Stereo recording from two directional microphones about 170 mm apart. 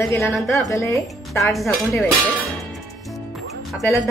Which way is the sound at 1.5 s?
Centre (ahead or behind).